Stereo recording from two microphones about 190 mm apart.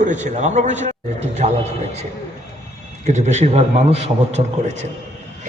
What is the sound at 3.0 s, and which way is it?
A man's voice, 40° right (ahead or behind).